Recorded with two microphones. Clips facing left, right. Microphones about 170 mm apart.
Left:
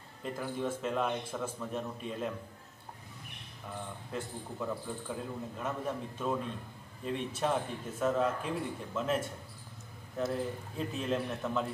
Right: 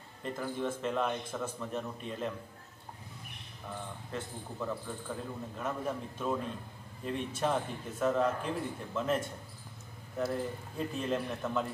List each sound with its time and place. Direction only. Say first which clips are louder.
0.2 s a man's voice: even; 5° left (ahead or behind)
4.1 s a man's voice: left 1 dB; 5° left (ahead or behind)